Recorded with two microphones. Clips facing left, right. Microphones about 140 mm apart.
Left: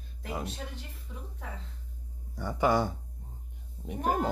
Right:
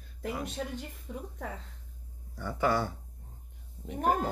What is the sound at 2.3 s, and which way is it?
Speech, 15° left (ahead or behind).